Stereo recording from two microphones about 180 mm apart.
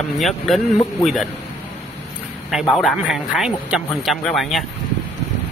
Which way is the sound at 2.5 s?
Centre (ahead or behind).